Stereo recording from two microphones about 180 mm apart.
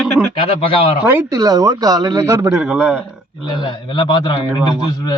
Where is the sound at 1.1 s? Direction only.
15° right (ahead or behind).